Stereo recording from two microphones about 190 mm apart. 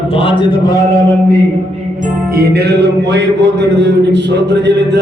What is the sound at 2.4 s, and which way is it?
A man's voice, 60° right (ahead or behind).